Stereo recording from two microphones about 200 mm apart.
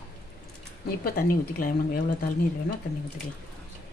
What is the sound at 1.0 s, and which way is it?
Speech, 45° left (ahead or behind).